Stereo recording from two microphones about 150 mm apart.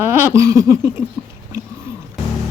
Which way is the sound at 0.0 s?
15° right (ahead or behind).